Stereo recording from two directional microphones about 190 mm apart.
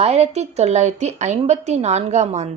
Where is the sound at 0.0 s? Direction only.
35° right (ahead or behind).